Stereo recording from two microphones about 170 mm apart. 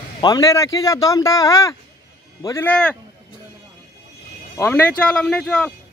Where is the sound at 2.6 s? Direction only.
5° left (ahead or behind).